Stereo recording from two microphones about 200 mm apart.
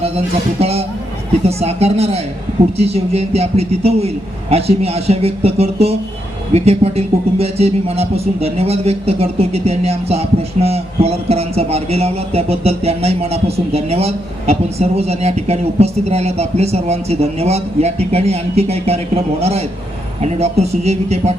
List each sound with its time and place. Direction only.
0.6 s speech: 30° right (ahead or behind)